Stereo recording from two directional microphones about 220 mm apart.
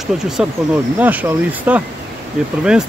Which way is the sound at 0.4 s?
5° right (ahead or behind).